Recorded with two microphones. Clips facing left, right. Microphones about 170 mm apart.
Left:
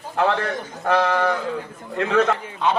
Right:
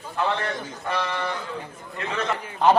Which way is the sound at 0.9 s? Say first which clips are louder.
Left 9 dB; 90° left.